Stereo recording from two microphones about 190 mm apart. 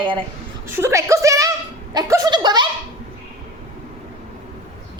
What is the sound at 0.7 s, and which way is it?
A woman's voice, 15° right (ahead or behind).